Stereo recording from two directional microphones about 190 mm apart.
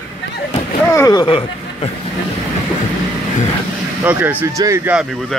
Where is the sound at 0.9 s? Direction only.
20° left (ahead or behind).